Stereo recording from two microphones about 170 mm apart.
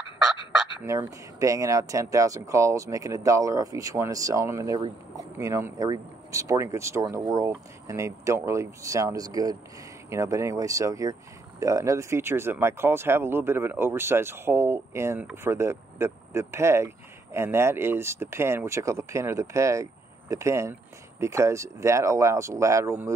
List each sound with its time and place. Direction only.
0.8 s speech: 20° right (ahead or behind)